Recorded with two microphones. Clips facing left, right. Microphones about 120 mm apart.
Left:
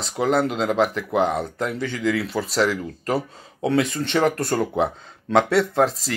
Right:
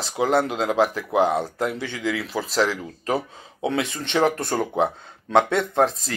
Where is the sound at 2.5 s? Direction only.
40° right (ahead or behind).